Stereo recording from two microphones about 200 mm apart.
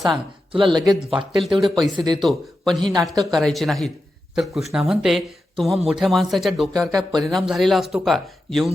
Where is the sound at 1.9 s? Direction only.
20° right (ahead or behind).